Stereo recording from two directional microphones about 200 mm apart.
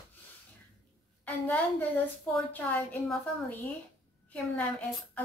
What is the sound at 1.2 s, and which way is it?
A woman's voice, 10° left (ahead or behind).